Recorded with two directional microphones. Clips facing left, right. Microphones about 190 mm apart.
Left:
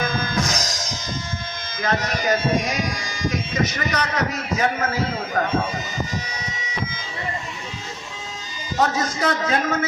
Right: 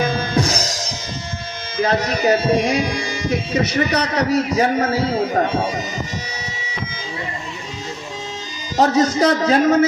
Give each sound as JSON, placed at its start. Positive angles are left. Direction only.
{"t": 0.0, "sound": "music", "side_deg": -35}
{"t": 1.8, "sound": "speech", "side_deg": -35}
{"t": 8.8, "sound": "speech", "side_deg": -35}